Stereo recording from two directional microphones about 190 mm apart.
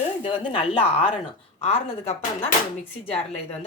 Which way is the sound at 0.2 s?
30° left (ahead or behind).